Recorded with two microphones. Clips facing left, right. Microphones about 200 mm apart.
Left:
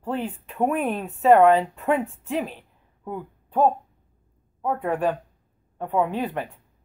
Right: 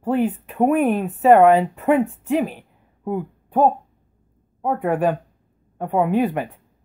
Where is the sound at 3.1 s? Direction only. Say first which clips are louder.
Right 8 dB; 55° right (ahead or behind).